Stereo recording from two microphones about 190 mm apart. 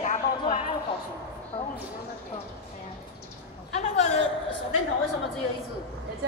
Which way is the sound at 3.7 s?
35° left (ahead or behind).